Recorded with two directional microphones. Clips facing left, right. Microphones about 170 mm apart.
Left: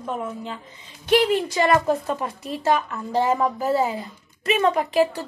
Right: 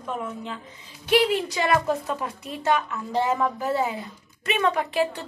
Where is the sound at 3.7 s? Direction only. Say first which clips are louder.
Left 3 dB; 40° left (ahead or behind).